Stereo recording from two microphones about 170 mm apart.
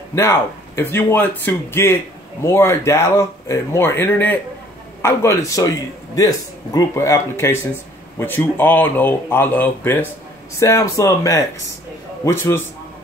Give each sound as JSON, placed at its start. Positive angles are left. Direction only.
{"t": 0.1, "sound": "speech", "side_deg": 15}